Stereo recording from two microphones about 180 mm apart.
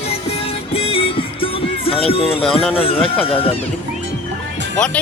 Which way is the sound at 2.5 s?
30° left (ahead or behind).